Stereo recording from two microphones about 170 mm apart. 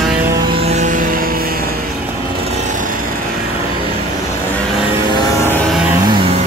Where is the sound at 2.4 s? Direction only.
45° right (ahead or behind).